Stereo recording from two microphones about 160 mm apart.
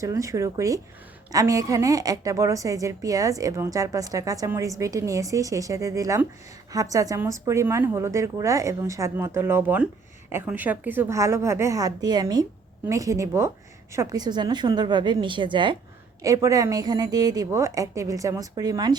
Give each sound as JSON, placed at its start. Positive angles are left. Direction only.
{"t": 0.0, "sound": "a woman's voice", "side_deg": -20}